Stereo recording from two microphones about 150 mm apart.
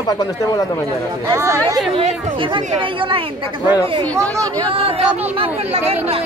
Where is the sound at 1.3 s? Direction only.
20° right (ahead or behind).